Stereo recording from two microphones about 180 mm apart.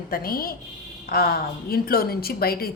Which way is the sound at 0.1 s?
55° left (ahead or behind).